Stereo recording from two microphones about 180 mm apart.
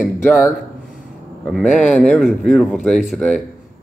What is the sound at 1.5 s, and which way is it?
Speech, 5° left (ahead or behind).